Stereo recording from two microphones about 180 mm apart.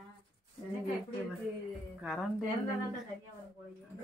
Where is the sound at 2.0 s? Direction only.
Centre (ahead or behind).